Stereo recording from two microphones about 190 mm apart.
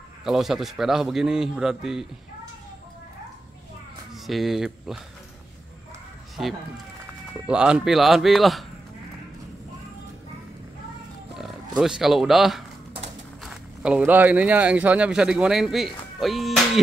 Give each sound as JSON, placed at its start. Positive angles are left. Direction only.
{"t": 0.2, "sound": "a man's voice", "side_deg": 0}
{"t": 4.3, "sound": "a man's voice", "side_deg": 0}
{"t": 7.4, "sound": "a man's voice", "side_deg": -5}
{"t": 11.3, "sound": "speech", "side_deg": 0}